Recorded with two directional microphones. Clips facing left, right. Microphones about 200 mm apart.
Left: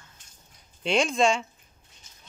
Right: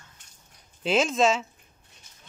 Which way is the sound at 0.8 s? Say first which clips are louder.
Right 1 dB; 5° right (ahead or behind).